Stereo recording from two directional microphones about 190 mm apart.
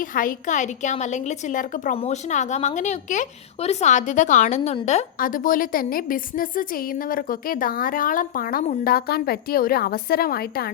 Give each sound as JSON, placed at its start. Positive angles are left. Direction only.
{"t": 0.1, "sound": "a woman's voice", "side_deg": 45}